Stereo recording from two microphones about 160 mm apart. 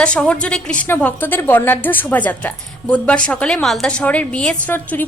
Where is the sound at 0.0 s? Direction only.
5° left (ahead or behind).